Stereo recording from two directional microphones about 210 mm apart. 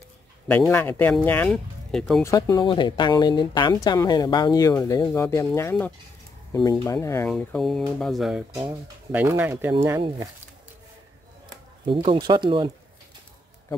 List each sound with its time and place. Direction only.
0.5 s speech: 10° left (ahead or behind)
2.2 s speech: 15° left (ahead or behind); by 10.3 s 20° right (ahead or behind)
11.8 s speech: 25° right (ahead or behind)